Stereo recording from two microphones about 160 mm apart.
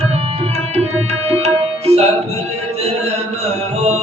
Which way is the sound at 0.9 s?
40° right (ahead or behind).